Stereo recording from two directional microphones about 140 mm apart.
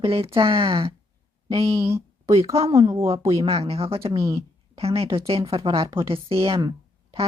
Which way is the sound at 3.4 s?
45° right (ahead or behind).